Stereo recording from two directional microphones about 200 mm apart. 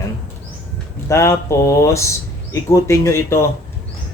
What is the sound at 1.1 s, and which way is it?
Speech, 15° left (ahead or behind).